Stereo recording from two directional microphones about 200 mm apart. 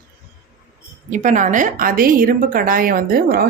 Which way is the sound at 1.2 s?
40° right (ahead or behind).